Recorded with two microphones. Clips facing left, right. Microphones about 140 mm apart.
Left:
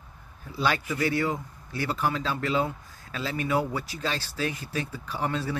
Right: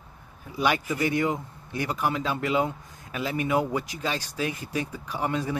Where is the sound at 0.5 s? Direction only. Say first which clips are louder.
Right 2 dB; 15° right (ahead or behind).